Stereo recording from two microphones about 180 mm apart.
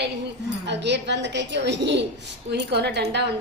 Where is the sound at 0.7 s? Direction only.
75° right (ahead or behind).